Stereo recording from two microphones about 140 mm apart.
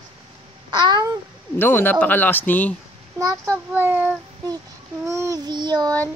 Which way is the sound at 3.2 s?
25° right (ahead or behind).